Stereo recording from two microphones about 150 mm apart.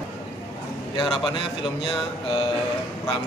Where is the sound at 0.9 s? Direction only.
30° left (ahead or behind).